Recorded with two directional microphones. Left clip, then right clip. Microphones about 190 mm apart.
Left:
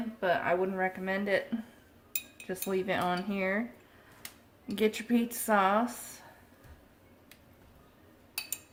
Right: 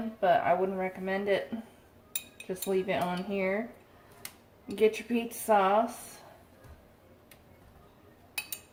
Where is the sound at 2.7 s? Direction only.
55° left (ahead or behind).